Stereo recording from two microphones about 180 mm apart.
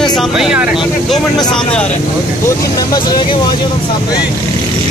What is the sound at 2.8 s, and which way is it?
Speech, 25° left (ahead or behind).